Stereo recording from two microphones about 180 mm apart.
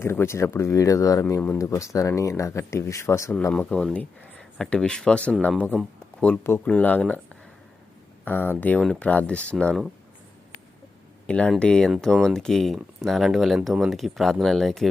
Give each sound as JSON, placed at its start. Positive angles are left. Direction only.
{"t": 0.0, "sound": "speech", "side_deg": 15}
{"t": 8.2, "sound": "speech", "side_deg": 10}
{"t": 11.3, "sound": "speech", "side_deg": 5}